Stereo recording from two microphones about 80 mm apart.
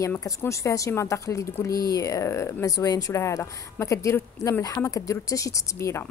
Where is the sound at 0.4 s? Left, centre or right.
Left.